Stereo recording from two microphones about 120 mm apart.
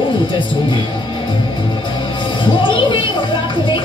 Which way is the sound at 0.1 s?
40° left (ahead or behind).